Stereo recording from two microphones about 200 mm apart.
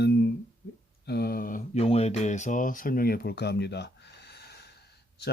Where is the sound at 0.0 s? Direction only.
55° left (ahead or behind).